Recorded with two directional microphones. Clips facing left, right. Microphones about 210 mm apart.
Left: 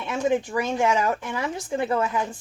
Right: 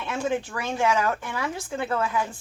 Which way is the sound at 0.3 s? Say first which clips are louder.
Left 6 dB; 15° left (ahead or behind).